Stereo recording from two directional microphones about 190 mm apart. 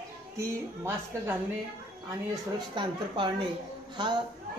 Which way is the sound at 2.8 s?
25° right (ahead or behind).